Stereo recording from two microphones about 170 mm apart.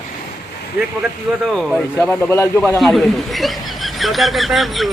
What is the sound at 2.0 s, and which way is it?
Speech, 15° left (ahead or behind).